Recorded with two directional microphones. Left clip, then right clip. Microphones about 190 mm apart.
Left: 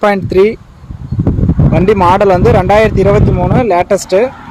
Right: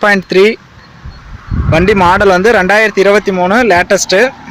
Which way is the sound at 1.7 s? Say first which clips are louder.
Right 1 dB; centre (ahead or behind).